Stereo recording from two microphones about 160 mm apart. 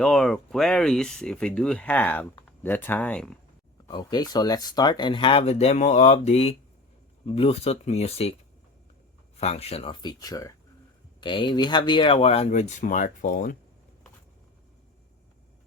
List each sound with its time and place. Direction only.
0.0 s speech: centre (ahead or behind)
3.8 s speech: 25° left (ahead or behind)
9.4 s speech: 40° left (ahead or behind); by 13.6 s 55° left (ahead or behind)